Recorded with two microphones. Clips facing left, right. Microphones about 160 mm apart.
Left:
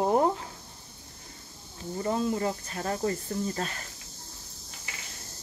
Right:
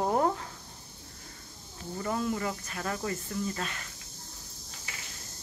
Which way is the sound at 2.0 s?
25° left (ahead or behind).